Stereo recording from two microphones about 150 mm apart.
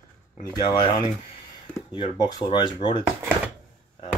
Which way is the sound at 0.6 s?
30° left (ahead or behind).